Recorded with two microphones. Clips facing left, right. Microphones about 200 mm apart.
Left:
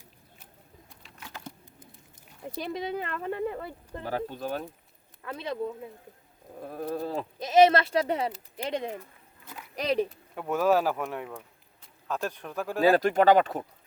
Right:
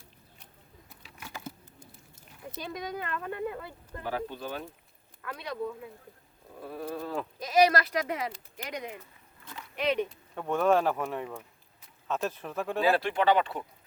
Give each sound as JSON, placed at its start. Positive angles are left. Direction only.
{"t": 0.9, "sound": "a sound", "side_deg": -5}
{"t": 2.7, "sound": "speech", "side_deg": 25}
{"t": 4.0, "sound": "speech", "side_deg": 40}
{"t": 5.2, "sound": "speech", "side_deg": 25}
{"t": 6.7, "sound": "speech", "side_deg": 45}
{"t": 7.3, "sound": "speech", "side_deg": 25}
{"t": 10.3, "sound": "speech", "side_deg": 5}
{"t": 12.8, "sound": "speech", "side_deg": 40}